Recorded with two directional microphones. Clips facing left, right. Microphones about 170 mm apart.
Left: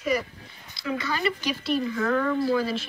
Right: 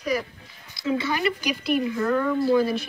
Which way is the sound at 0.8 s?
20° right (ahead or behind).